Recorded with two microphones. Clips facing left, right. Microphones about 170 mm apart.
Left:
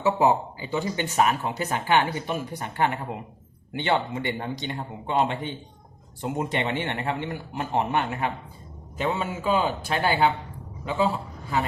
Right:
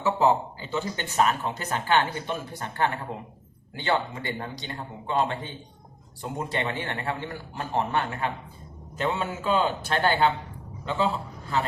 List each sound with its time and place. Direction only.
0.0 s a man's voice: 15° left (ahead or behind)